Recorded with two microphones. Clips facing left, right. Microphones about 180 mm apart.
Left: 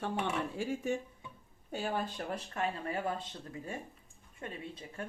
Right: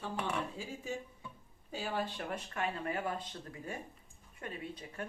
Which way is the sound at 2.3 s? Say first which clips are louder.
Left 2 dB; 35° left (ahead or behind).